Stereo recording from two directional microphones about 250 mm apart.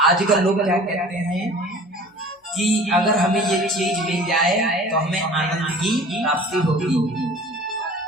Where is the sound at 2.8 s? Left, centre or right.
Centre.